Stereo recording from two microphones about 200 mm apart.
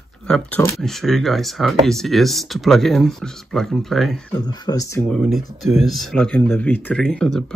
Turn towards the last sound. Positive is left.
turn(degrees=5)  # may be behind; listen again after turning